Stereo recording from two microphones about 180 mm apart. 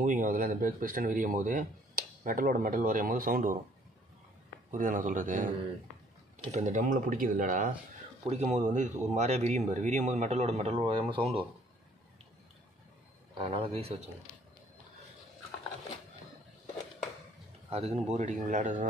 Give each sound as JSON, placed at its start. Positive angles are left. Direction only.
{"t": 0.0, "sound": "speech", "side_deg": -45}
{"t": 4.6, "sound": "speech", "side_deg": -50}
{"t": 6.5, "sound": "speech", "side_deg": -45}
{"t": 13.4, "sound": "speech", "side_deg": -30}
{"t": 17.6, "sound": "a man's voice", "side_deg": -35}